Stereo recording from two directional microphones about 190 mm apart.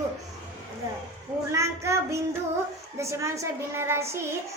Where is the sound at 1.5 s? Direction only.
15° right (ahead or behind).